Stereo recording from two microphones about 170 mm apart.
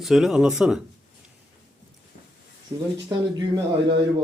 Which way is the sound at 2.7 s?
15° right (ahead or behind).